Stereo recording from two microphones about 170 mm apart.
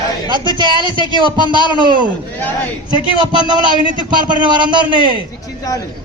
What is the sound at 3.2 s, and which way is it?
A man's voice, 25° right (ahead or behind).